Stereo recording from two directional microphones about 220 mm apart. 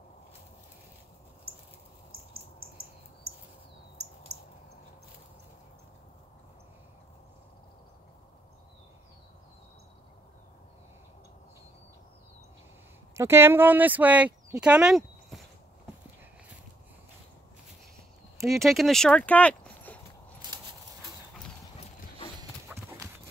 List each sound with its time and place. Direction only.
13.1 s speech: 10° right (ahead or behind)
18.4 s speech: centre (ahead or behind)
22.4 s dog: 15° right (ahead or behind)